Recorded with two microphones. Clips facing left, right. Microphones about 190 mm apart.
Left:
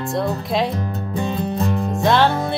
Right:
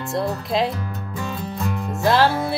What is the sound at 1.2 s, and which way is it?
Music, 30° left (ahead or behind).